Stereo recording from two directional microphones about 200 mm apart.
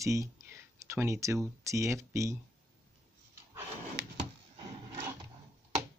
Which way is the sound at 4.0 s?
60° right (ahead or behind).